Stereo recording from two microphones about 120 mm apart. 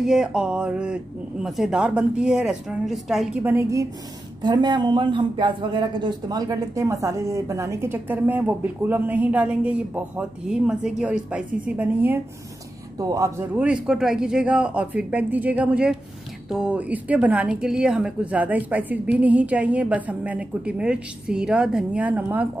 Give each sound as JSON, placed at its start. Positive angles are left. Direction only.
{"t": 0.0, "sound": "speech", "side_deg": -5}
{"t": 3.4, "sound": "speech", "side_deg": -20}
{"t": 4.4, "sound": "speech", "side_deg": -35}
{"t": 12.9, "sound": "speech", "side_deg": -30}
{"t": 13.6, "sound": "speech", "side_deg": -5}